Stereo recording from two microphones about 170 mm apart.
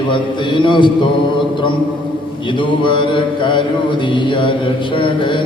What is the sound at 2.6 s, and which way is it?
Mantra, 30° left (ahead or behind).